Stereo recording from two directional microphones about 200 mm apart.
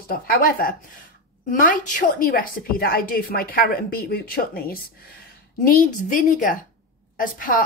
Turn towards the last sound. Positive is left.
turn(degrees=45)  # may be behind; listen again after turning